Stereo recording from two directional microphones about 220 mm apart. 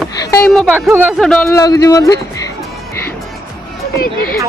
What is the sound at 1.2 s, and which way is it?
Speech, 10° left (ahead or behind).